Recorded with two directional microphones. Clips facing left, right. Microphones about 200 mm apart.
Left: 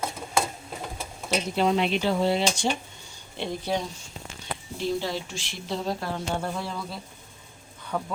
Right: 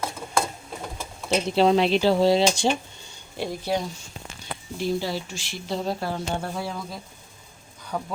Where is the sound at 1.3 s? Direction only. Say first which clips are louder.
Right 5 dB; 30° right (ahead or behind).